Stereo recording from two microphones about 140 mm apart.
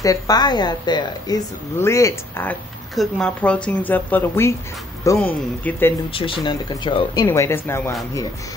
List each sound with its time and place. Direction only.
0.0 s a woman's voice: 25° left (ahead or behind)
1.8 s speech: 20° left (ahead or behind)
3.0 s speech: 5° left (ahead or behind)
6.1 s a woman's voice: 40° left (ahead or behind)
7.2 s speech: 15° left (ahead or behind)